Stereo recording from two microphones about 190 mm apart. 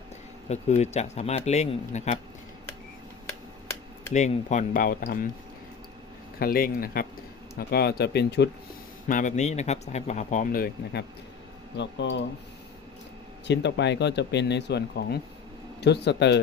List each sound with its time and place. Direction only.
0.4 s speech: 35° left (ahead or behind)
4.1 s speech: 40° left (ahead or behind)
6.4 s speech: 50° left (ahead or behind)
9.0 s speech: 45° left (ahead or behind)
11.8 s speech: 70° left (ahead or behind)
13.5 s speech: 65° left (ahead or behind)